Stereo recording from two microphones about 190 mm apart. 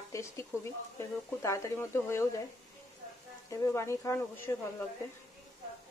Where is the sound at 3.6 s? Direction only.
15° left (ahead or behind).